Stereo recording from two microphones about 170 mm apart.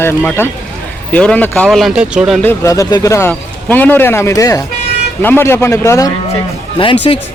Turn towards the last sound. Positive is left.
turn(degrees=30)  # may be behind; listen again after turning